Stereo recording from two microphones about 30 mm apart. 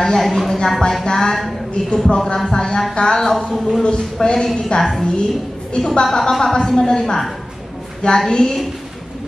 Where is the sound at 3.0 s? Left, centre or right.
Left.